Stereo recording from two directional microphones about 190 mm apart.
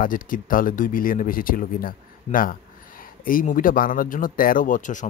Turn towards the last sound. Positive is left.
turn(degrees=40)  # may be behind; listen again after turning